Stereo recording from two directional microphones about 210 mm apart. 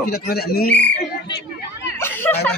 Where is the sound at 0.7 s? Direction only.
5° left (ahead or behind).